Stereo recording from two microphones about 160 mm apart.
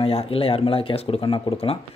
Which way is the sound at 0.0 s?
35° left (ahead or behind).